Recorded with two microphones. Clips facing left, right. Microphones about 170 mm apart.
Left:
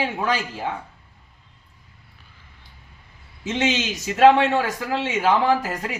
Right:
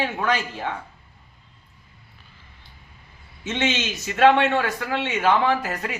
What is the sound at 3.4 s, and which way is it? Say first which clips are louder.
A man's voice: left 2 dB; 35° left (ahead or behind).